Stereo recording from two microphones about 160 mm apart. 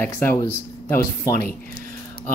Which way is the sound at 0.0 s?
10° left (ahead or behind).